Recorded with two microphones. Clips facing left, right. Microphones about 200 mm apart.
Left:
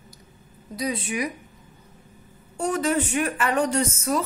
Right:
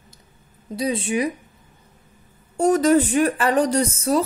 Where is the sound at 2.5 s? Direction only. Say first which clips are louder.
Right 8 dB; 40° right (ahead or behind).